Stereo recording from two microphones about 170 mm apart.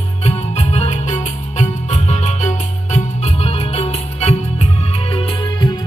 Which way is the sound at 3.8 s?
40° left (ahead or behind).